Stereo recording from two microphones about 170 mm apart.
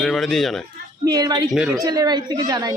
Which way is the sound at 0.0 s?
Centre (ahead or behind).